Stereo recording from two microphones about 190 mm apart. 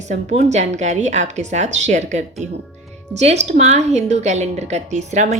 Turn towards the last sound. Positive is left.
turn(degrees=-40)  # may be behind; listen again after turning